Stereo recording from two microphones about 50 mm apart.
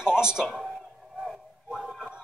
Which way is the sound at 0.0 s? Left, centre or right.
Centre.